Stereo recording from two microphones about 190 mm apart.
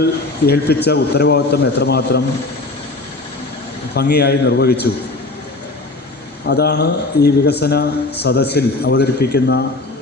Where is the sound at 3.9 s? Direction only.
60° left (ahead or behind).